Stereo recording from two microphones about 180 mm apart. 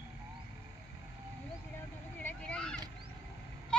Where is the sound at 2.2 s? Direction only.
5° left (ahead or behind).